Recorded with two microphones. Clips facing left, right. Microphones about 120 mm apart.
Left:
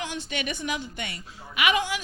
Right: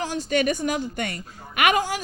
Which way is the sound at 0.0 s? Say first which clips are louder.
Right 9 dB; 40° right (ahead or behind).